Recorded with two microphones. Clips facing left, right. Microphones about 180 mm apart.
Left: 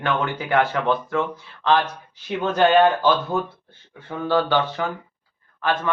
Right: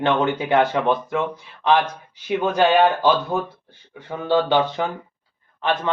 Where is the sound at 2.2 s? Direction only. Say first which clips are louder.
Right 1 dB; 15° right (ahead or behind).